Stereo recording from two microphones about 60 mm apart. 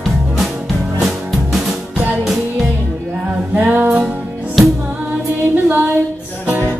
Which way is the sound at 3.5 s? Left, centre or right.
Right.